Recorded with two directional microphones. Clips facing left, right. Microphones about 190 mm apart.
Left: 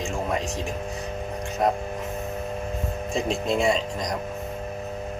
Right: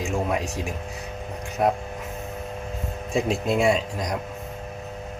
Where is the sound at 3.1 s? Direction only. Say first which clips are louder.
Right 2 dB; 5° right (ahead or behind).